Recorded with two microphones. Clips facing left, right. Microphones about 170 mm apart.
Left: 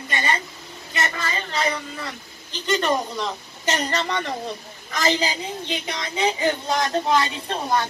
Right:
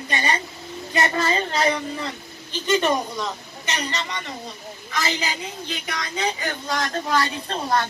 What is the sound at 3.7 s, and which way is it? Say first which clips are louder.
Speech: left 4 dB; 45° left (ahead or behind).